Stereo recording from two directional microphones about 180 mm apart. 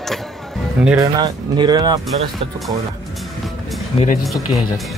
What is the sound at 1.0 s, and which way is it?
Speech, 25° right (ahead or behind).